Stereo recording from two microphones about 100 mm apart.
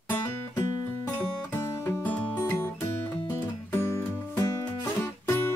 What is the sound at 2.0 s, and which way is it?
Music, 20° left (ahead or behind).